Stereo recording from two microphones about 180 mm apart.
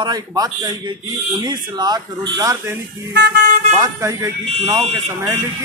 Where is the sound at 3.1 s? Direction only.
60° right (ahead or behind).